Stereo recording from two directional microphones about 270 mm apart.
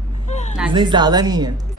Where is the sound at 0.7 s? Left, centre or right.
Centre.